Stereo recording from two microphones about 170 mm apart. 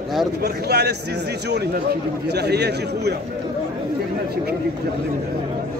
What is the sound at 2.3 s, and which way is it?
Speech, 75° right (ahead or behind).